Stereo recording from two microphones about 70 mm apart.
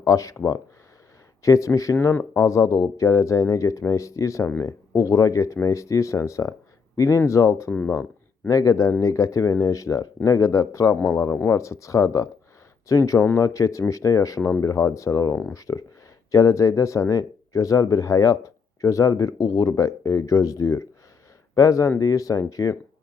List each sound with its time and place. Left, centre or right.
0.0 s speech: left
2.0 s speech: left
2.3 s speech: left
10.9 s speech: left
11.4 s speech: left